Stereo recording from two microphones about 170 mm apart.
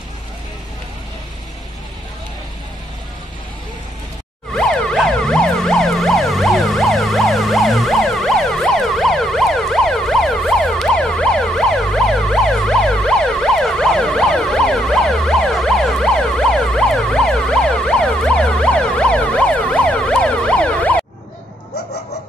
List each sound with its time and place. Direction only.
4.6 s emergency vehicle: 5° left (ahead or behind)